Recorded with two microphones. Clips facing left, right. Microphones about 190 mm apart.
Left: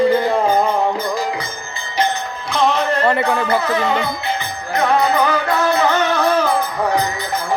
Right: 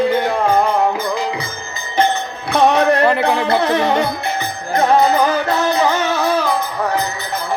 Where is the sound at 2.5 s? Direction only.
65° right (ahead or behind).